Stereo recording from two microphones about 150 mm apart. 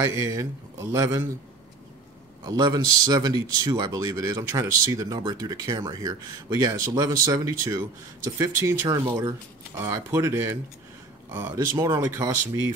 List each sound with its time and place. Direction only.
0.1 s speech: 20° right (ahead or behind)
2.4 s speech: 25° right (ahead or behind)